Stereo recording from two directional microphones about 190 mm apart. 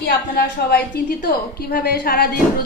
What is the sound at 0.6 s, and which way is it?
A woman's voice, 55° left (ahead or behind).